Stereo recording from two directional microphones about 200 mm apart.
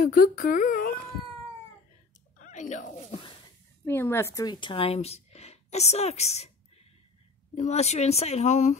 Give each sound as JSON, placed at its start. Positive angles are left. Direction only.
{"t": 0.0, "sound": "speech", "side_deg": 45}
{"t": 2.3, "sound": "a sound", "side_deg": 40}
{"t": 3.8, "sound": "a woman's voice", "side_deg": 10}
{"t": 7.5, "sound": "a woman's voice", "side_deg": 35}